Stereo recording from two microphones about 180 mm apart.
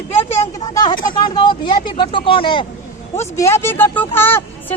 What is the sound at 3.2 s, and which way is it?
Speech, 15° left (ahead or behind).